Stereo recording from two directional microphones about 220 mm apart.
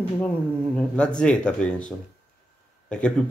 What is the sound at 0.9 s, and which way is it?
Speech, 5° left (ahead or behind).